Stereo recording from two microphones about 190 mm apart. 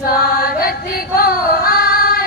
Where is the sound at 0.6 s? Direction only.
50° left (ahead or behind).